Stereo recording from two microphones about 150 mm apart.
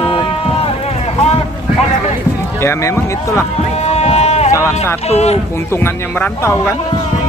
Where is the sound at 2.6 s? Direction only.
20° left (ahead or behind).